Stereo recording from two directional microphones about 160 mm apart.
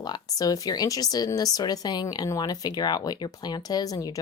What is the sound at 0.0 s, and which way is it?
Speech, 25° left (ahead or behind).